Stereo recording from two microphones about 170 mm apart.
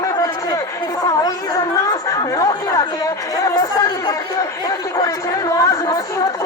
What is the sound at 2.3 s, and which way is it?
Chatter, 20° left (ahead or behind).